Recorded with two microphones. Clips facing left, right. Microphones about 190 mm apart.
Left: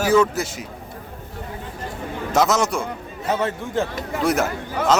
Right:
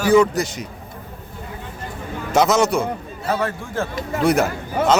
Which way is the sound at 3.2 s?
20° left (ahead or behind).